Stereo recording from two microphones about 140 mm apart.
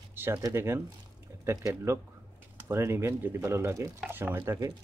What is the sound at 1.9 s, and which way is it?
Speech, 20° right (ahead or behind).